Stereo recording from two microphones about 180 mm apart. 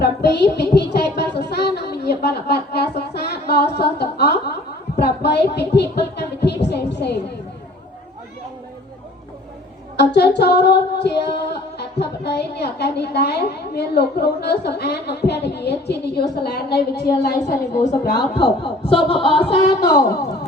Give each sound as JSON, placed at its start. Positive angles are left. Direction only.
{"t": 0.0, "sound": "speech", "side_deg": 65}
{"t": 4.9, "sound": "music", "side_deg": 65}
{"t": 10.0, "sound": "female singing", "side_deg": 70}
{"t": 17.4, "sound": "speech", "side_deg": 45}
{"t": 18.6, "sound": "speech", "side_deg": 30}